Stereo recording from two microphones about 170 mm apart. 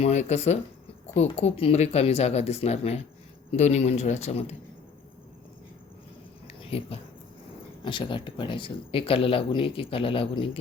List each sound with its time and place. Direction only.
0.0 s speech: 40° left (ahead or behind)
6.6 s speech: 35° left (ahead or behind)